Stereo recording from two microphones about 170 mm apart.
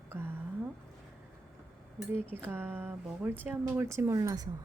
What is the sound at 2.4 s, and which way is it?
A woman's voice, 10° right (ahead or behind).